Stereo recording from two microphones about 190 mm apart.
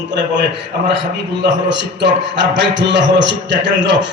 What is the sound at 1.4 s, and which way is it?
A man's voice, 65° right (ahead or behind).